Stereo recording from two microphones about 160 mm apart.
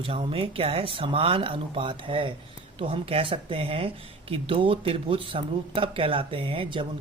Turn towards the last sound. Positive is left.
turn(degrees=-35)  # may be behind; listen again after turning